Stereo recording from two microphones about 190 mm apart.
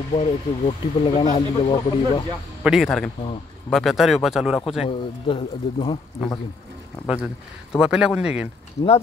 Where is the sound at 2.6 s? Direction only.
Centre (ahead or behind).